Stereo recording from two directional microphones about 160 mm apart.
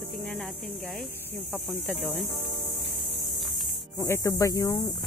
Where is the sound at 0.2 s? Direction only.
5° left (ahead or behind).